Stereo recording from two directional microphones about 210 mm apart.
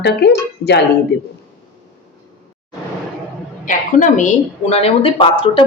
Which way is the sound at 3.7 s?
35° left (ahead or behind).